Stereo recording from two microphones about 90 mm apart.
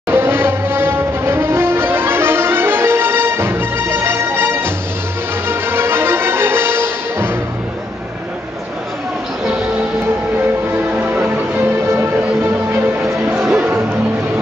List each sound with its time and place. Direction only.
0.1 s music: 25° right (ahead or behind)
9.4 s music: 10° right (ahead or behind)
10.9 s music: 15° right (ahead or behind)
13.0 s music: 10° right (ahead or behind)